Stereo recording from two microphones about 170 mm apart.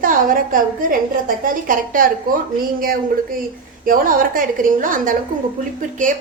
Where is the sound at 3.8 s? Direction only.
55° right (ahead or behind).